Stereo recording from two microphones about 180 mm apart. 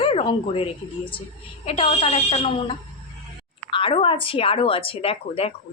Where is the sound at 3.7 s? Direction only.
30° left (ahead or behind).